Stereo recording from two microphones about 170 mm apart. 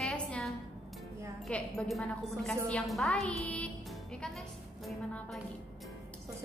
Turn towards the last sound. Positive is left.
turn(degrees=0)  # may be behind; listen again after turning